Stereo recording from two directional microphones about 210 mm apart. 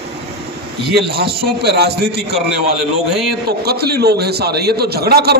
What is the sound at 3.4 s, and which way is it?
A man's voice, 50° right (ahead or behind).